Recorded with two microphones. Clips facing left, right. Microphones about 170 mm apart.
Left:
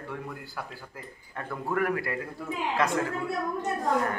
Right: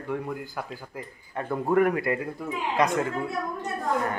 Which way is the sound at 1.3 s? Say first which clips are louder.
Right 7 dB; 25° right (ahead or behind).